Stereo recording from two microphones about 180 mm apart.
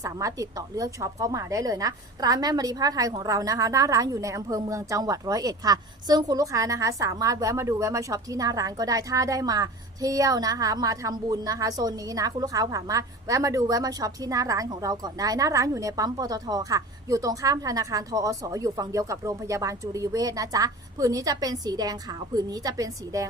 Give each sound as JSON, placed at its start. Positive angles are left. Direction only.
{"t": 0.0, "sound": "a woman's voice", "side_deg": -20}